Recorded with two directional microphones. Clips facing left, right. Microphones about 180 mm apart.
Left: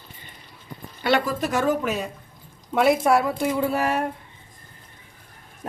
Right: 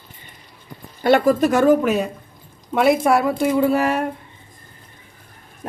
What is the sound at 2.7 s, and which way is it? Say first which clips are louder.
Speech: right 2 dB; 70° right (ahead or behind).